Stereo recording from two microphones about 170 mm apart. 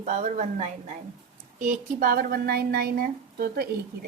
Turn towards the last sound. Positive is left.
turn(degrees=-65)  # may be behind; listen again after turning